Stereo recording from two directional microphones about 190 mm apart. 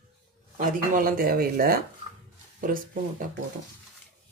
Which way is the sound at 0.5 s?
45° right (ahead or behind).